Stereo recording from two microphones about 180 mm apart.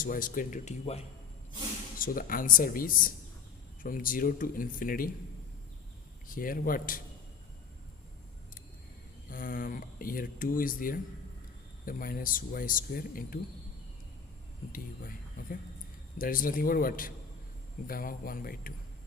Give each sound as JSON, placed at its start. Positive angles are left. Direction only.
{"t": 0.0, "sound": "speech", "side_deg": 50}
{"t": 2.0, "sound": "speech", "side_deg": 50}
{"t": 6.2, "sound": "speech", "side_deg": 50}
{"t": 9.3, "sound": "speech", "side_deg": 50}
{"t": 14.7, "sound": "speech", "side_deg": 50}